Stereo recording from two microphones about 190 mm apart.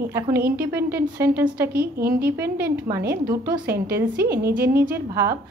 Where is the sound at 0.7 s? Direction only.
10° right (ahead or behind).